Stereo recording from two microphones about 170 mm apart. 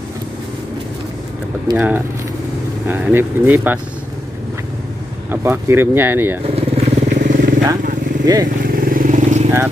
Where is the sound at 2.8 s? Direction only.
10° right (ahead or behind).